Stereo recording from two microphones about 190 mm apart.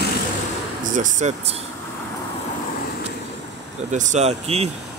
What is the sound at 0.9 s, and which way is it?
Speech, 40° right (ahead or behind).